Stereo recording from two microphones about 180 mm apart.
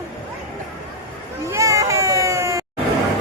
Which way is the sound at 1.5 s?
15° right (ahead or behind).